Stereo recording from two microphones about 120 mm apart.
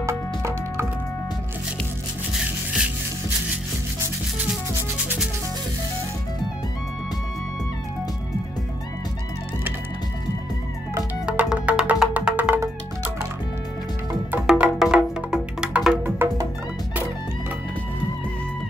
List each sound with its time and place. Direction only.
0.0 s music: 25° right (ahead or behind)
11.2 s music: 10° right (ahead or behind)
14.3 s music: 10° right (ahead or behind)
16.2 s music: 20° right (ahead or behind)